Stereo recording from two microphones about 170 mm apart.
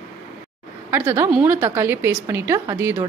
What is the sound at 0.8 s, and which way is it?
A woman's voice, 15° right (ahead or behind).